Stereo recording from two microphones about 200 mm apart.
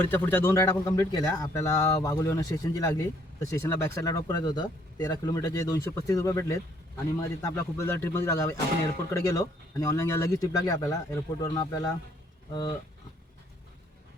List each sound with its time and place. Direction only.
0.0 s a man's voice: 10° left (ahead or behind)